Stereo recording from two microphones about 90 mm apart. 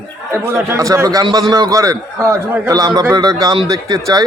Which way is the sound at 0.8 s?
40° right (ahead or behind).